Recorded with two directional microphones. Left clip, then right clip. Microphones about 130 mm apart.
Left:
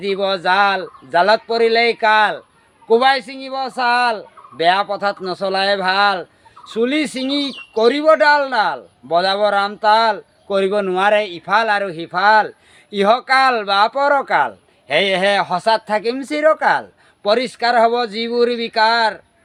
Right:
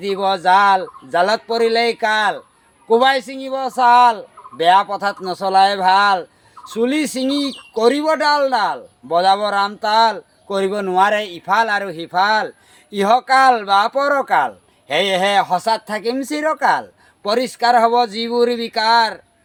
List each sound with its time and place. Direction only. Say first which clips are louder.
0.0 s a man's voice: right 1 dB; 15° left (ahead or behind)
4.9 s speech: left 1 dB; 50° left (ahead or behind)
5.2 s a man's voice: right 4 dB; 15° left (ahead or behind)